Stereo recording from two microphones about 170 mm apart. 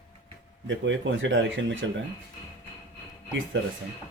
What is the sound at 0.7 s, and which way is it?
Speech, 90° right.